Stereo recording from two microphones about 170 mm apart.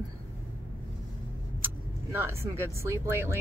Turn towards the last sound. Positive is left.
turn(degrees=-15)  # may be behind; listen again after turning